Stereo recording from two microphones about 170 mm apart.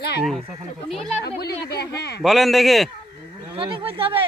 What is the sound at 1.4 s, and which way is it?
Speech, 70° left (ahead or behind).